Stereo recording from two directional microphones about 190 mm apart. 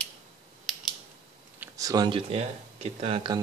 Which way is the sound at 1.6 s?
20° right (ahead or behind).